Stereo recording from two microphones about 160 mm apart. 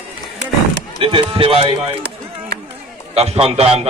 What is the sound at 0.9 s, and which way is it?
Speech, 35° right (ahead or behind).